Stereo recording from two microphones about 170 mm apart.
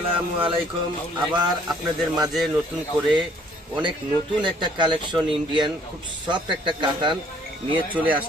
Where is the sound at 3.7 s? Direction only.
30° right (ahead or behind).